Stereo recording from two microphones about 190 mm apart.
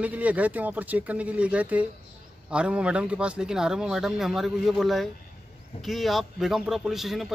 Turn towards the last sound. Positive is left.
turn(degrees=0)  # may be behind; listen again after turning